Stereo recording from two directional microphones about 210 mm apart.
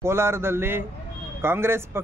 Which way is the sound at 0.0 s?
10° right (ahead or behind).